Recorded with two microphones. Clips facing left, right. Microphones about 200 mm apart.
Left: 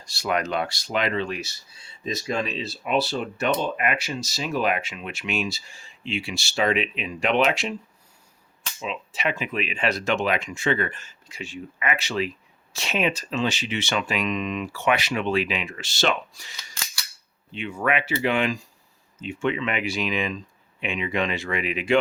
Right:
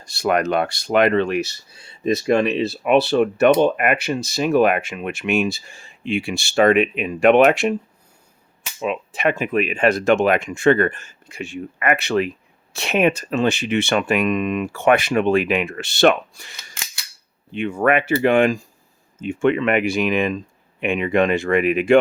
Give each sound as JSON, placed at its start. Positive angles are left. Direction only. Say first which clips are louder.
{"t": 0.0, "sound": "speech", "louder": "right 7 dB", "side_deg": -55}
{"t": 8.8, "sound": "speech", "louder": "right 8 dB", "side_deg": -55}